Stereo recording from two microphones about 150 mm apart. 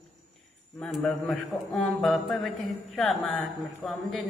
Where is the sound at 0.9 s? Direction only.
Centre (ahead or behind).